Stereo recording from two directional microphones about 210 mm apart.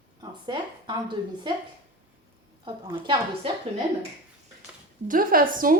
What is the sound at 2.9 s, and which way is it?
Speech, 25° right (ahead or behind).